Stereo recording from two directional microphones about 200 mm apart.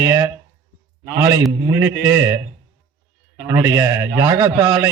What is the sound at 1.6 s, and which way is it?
Speech, 15° right (ahead or behind).